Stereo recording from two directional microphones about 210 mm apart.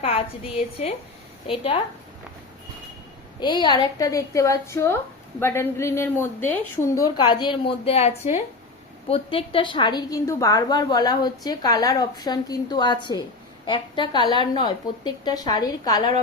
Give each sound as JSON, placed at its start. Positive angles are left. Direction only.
{"t": 0.0, "sound": "a woman's voice", "side_deg": 25}
{"t": 1.5, "sound": "a woman's voice", "side_deg": 25}
{"t": 3.4, "sound": "a woman's voice", "side_deg": 20}